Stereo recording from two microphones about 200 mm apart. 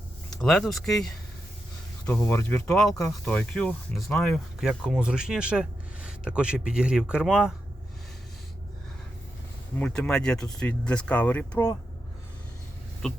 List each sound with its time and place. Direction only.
0.3 s speech: 5° left (ahead or behind)
2.0 s speech: 10° left (ahead or behind)
9.7 s speech: 5° left (ahead or behind)
13.0 s speech: 5° left (ahead or behind)